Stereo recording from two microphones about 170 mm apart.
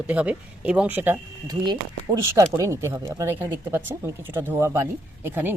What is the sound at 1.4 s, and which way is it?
Speech, 25° right (ahead or behind).